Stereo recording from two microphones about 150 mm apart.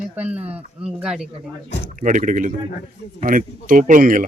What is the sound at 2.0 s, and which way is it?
A man's voice, 60° right (ahead or behind).